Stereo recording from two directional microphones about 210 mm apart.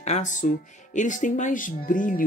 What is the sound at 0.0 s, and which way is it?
A woman's voice, 35° left (ahead or behind).